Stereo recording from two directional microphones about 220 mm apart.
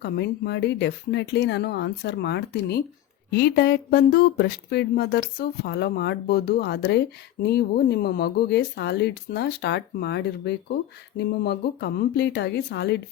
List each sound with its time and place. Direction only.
0.0 s speech: 50° left (ahead or behind)